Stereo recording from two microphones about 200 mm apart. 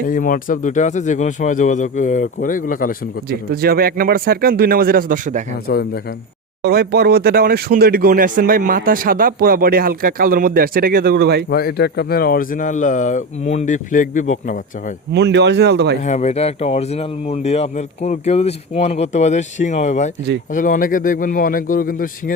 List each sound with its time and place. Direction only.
0.1 s speech: 45° left (ahead or behind)
3.2 s speech: 50° right (ahead or behind)
5.6 s a man's voice: 50° left (ahead or behind)
6.6 s speech: 50° right (ahead or behind)
11.4 s speech: 55° left (ahead or behind)
15.1 s speech: 60° right (ahead or behind)
16.0 s a man's voice: 35° left (ahead or behind)